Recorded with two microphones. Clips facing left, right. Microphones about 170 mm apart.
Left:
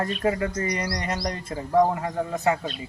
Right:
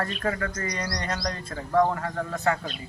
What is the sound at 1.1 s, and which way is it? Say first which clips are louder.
Speech: left 2 dB; 25° left (ahead or behind).